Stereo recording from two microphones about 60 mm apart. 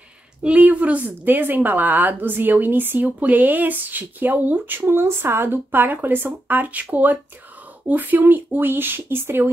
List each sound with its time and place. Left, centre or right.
0.4 s a woman's voice: right